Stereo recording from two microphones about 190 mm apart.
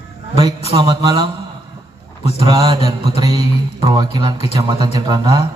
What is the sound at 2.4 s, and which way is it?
A man's voice, 20° right (ahead or behind).